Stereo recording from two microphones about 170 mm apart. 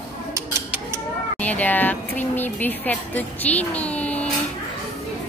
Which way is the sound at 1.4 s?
10° left (ahead or behind).